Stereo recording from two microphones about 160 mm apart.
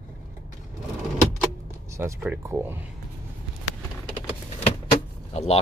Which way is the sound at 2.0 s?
15° right (ahead or behind).